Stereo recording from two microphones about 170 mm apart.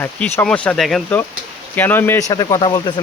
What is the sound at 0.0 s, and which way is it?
Speech, 15° left (ahead or behind).